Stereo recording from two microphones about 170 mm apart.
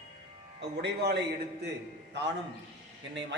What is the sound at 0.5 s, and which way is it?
A man's voice, 85° right.